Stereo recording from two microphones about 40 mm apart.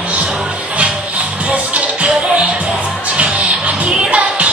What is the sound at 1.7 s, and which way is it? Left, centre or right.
Music, right.